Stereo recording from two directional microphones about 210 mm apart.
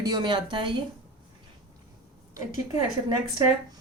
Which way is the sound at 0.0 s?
20° right (ahead or behind).